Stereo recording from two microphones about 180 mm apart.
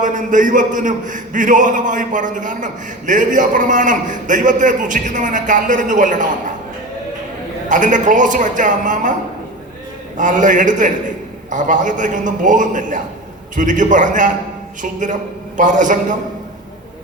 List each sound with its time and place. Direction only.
0.0 s a man's voice: 45° right (ahead or behind)
7.7 s a man's voice: 45° right (ahead or behind)
10.2 s a man's voice: 45° right (ahead or behind)